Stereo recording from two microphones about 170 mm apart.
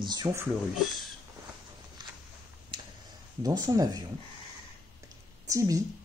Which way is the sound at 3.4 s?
20° right (ahead or behind).